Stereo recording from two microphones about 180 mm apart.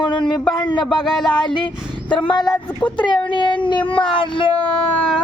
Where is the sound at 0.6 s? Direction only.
25° left (ahead or behind).